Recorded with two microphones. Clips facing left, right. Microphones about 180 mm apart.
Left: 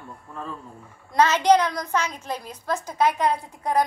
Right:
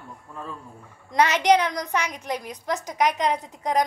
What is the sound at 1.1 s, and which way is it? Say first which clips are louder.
A woman's voice: left 1 dB; 15° right (ahead or behind).